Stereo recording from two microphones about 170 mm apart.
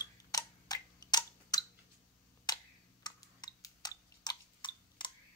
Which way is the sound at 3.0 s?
25° left (ahead or behind).